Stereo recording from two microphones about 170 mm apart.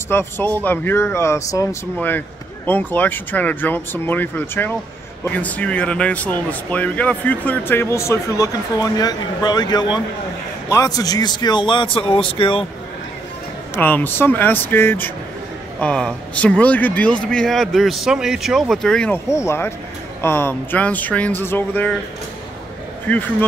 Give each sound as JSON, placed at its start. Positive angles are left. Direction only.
{"t": 0.1, "sound": "speech", "side_deg": 15}
{"t": 13.7, "sound": "a man's voice", "side_deg": 10}